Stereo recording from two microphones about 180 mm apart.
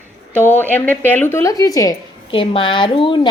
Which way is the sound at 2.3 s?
30° left (ahead or behind).